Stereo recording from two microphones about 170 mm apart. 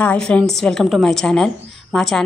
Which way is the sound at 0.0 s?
5° left (ahead or behind).